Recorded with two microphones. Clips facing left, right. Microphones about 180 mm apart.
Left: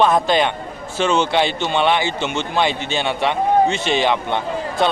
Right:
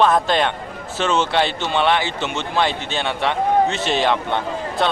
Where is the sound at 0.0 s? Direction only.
Centre (ahead or behind).